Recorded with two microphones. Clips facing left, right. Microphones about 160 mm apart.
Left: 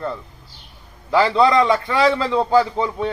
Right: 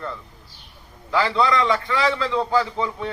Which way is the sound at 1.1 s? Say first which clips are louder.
Left 5 dB; 30° left (ahead or behind).